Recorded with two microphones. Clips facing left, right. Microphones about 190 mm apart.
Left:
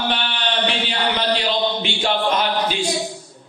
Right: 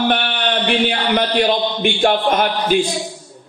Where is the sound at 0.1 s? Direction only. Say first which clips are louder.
Right 5 dB; 55° right (ahead or behind).